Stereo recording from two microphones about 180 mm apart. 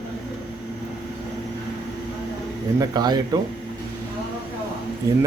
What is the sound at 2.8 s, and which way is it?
Speech, 20° right (ahead or behind).